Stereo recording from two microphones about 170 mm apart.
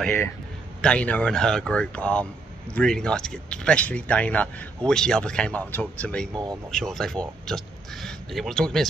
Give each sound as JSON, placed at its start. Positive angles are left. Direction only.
{"t": 0.7, "sound": "speech", "side_deg": 5}
{"t": 6.3, "sound": "speech", "side_deg": -25}
{"t": 6.7, "sound": "speech", "side_deg": 5}